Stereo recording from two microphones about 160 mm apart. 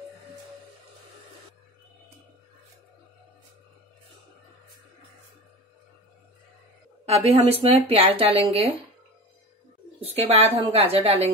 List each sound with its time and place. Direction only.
7.1 s a woman's voice: 40° right (ahead or behind)
9.9 s a woman's voice: 40° right (ahead or behind)